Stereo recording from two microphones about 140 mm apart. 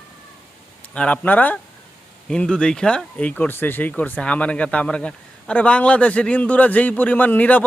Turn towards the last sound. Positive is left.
turn(degrees=10)  # may be behind; listen again after turning